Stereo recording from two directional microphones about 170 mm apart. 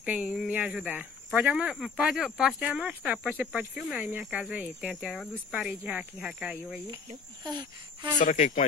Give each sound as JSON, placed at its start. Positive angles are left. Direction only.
{"t": 0.0, "sound": "speech", "side_deg": -5}
{"t": 7.4, "sound": "a sound", "side_deg": -25}
{"t": 8.2, "sound": "speech", "side_deg": 45}